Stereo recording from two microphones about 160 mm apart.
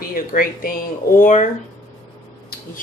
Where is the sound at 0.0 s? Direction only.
65° left (ahead or behind).